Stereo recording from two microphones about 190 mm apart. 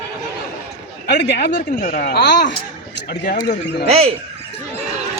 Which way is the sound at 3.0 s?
55° left (ahead or behind).